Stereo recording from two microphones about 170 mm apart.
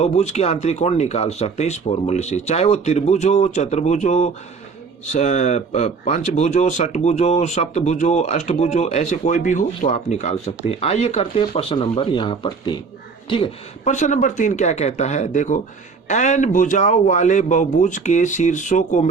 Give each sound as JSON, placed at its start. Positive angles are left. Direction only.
{"t": 0.0, "sound": "speech", "side_deg": 40}
{"t": 13.8, "sound": "speech", "side_deg": 45}